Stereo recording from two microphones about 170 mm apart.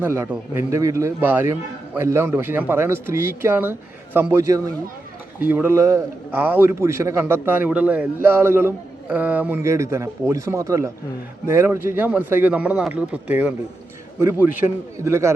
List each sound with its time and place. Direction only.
0.0 s a man's voice: 10° right (ahead or behind)